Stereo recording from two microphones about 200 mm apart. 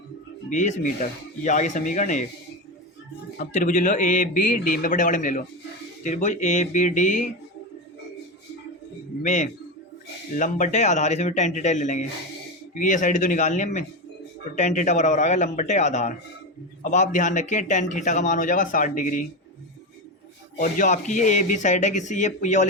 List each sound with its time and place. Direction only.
0.5 s a man's voice: 40° left (ahead or behind)
3.3 s a man's voice: 40° left (ahead or behind)
9.2 s a man's voice: 40° left (ahead or behind)
20.6 s a man's voice: 35° left (ahead or behind)